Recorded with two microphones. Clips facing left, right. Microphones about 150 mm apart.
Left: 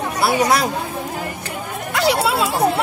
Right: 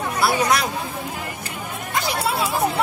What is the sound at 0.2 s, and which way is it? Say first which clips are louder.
Speech: left 3 dB; 30° left (ahead or behind).